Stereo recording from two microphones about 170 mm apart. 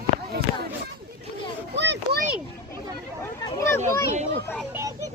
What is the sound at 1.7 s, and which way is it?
Children playing, 80° right.